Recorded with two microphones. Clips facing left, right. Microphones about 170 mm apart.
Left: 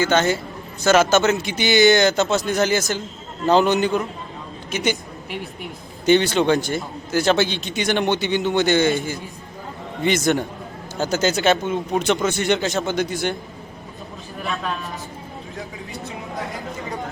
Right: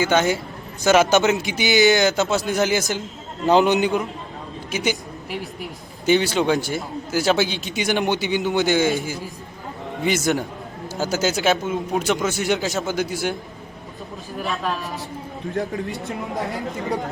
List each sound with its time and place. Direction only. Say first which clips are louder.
0.0 s a man's voice: even; 10° right (ahead or behind)
14.3 s speech: right 1 dB; centre (ahead or behind)
15.9 s speech: right 4 dB; centre (ahead or behind)